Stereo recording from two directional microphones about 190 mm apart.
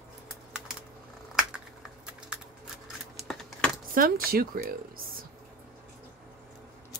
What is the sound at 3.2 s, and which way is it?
Keys jangling, centre (ahead or behind).